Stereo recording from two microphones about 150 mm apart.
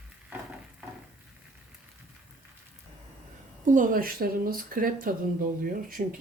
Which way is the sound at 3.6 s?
55° right (ahead or behind).